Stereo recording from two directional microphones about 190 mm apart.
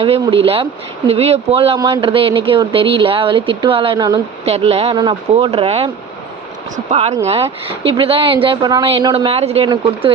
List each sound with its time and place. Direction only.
0.0 s speech: 30° right (ahead or behind)
4.4 s speech: 30° right (ahead or behind)